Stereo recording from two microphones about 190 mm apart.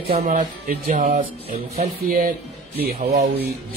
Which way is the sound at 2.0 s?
50° right (ahead or behind).